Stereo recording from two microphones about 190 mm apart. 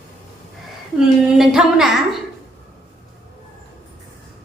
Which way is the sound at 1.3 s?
Centre (ahead or behind).